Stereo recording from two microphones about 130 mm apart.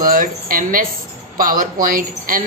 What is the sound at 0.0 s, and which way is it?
A woman's voice, 90° right.